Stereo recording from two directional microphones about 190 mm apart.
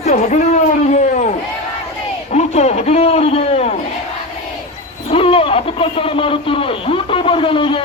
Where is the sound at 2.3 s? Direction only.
35° left (ahead or behind).